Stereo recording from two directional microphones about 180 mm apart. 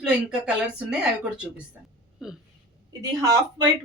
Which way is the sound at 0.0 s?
5° right (ahead or behind).